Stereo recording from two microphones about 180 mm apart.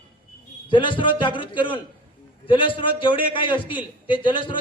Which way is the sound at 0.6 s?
25° left (ahead or behind).